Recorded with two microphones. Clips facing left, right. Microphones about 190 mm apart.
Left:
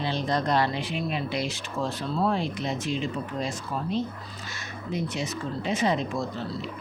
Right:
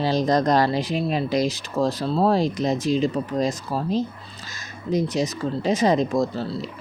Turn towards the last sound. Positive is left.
turn(degrees=-35)  # may be behind; listen again after turning